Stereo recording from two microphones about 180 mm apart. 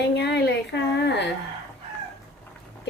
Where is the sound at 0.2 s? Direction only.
65° left (ahead or behind).